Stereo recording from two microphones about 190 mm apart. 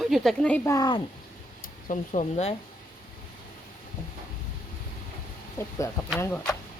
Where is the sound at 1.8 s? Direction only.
40° left (ahead or behind).